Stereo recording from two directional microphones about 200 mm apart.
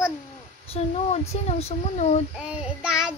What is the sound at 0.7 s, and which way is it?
Speech, 30° left (ahead or behind).